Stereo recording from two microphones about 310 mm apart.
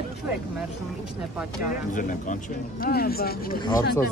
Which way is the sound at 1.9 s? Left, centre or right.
Left.